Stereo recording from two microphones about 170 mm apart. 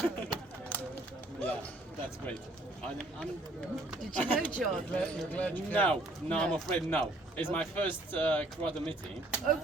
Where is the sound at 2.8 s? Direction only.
5° left (ahead or behind).